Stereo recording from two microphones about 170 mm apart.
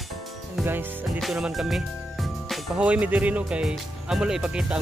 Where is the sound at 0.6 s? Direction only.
10° right (ahead or behind).